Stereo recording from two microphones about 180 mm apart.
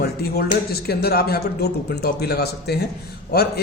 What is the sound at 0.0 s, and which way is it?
Speech, 60° left (ahead or behind).